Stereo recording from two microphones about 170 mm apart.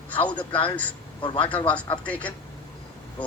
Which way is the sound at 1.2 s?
30° left (ahead or behind).